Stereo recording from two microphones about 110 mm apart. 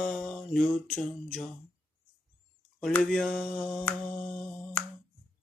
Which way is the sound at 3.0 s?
5° left (ahead or behind).